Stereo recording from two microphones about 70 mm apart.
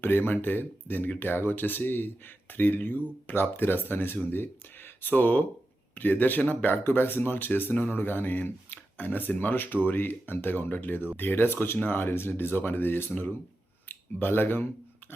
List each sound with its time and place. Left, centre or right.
0.0 s speech: left